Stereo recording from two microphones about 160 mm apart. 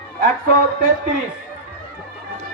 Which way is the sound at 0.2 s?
65° right (ahead or behind).